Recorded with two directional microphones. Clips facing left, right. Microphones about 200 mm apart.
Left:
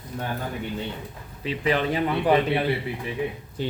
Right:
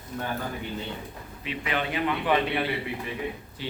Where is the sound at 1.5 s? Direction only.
35° left (ahead or behind).